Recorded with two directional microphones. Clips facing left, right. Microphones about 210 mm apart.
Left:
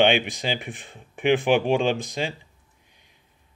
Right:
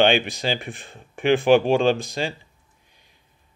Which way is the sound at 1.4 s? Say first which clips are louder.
Right 5 dB; 40° right (ahead or behind).